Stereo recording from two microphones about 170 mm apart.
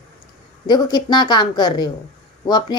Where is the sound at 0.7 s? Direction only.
25° left (ahead or behind).